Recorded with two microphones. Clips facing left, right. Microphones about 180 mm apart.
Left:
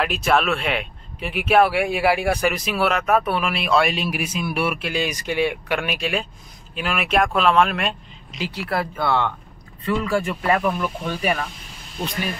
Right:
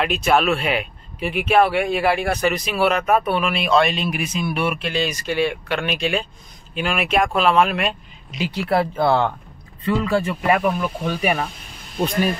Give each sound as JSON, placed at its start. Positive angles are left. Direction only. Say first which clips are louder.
{"t": 0.0, "sound": "speech", "louder": "right 2 dB", "side_deg": 0}
{"t": 8.6, "sound": "speech", "louder": "right 5 dB", "side_deg": -25}
{"t": 10.5, "sound": "speech", "louder": "right 2 dB", "side_deg": -10}